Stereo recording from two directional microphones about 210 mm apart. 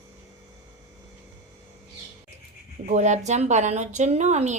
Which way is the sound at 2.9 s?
35° right (ahead or behind).